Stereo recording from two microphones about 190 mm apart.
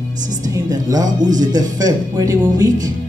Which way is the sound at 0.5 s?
20° right (ahead or behind).